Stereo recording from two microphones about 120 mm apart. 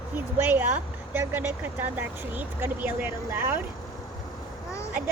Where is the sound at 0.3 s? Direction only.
15° right (ahead or behind).